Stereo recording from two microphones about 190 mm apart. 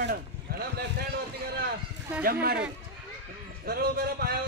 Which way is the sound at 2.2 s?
55° right (ahead or behind).